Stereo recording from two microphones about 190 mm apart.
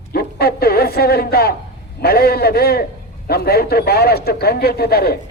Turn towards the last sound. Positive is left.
turn(degrees=55)  # may be behind; listen again after turning